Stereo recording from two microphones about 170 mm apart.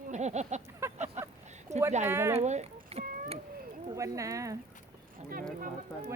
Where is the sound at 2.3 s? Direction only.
40° right (ahead or behind).